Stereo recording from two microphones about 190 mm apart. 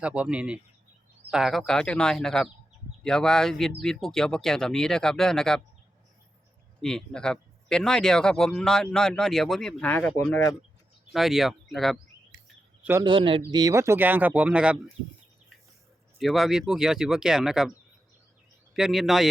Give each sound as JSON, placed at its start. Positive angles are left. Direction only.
{"t": 0.0, "sound": "speech", "side_deg": -5}
{"t": 6.8, "sound": "speech", "side_deg": 5}
{"t": 11.1, "sound": "speech", "side_deg": 0}
{"t": 12.8, "sound": "a man's voice", "side_deg": -15}
{"t": 13.1, "sound": "speech", "side_deg": -25}
{"t": 16.1, "sound": "speech", "side_deg": 0}
{"t": 18.7, "sound": "speech", "side_deg": 0}